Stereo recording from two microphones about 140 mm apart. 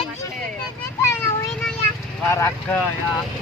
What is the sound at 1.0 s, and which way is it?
Children playing, 20° left (ahead or behind).